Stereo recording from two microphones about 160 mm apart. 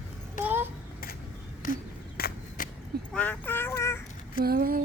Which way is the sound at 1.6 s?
55° left (ahead or behind).